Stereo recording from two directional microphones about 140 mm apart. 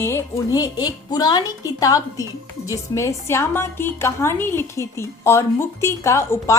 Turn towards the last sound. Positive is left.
turn(degrees=20)  # may be behind; listen again after turning